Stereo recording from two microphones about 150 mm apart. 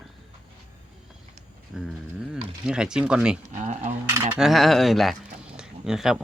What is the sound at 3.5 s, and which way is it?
Cutlery, 50° right (ahead or behind).